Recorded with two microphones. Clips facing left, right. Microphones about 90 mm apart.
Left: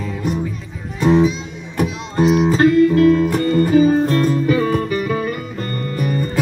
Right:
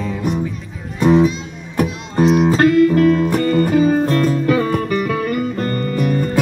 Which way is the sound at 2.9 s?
50° right (ahead or behind).